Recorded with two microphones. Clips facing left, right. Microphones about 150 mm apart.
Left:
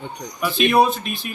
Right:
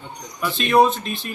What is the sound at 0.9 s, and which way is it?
Speech, 25° right (ahead or behind).